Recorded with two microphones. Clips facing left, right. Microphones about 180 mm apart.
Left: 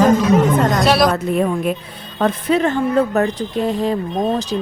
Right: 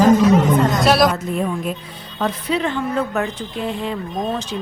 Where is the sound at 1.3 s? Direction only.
65° left (ahead or behind).